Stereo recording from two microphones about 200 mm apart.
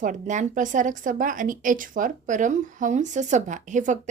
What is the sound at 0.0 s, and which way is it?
Speech, 40° right (ahead or behind).